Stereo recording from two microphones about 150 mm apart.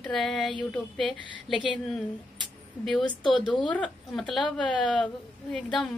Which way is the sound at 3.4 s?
30° left (ahead or behind).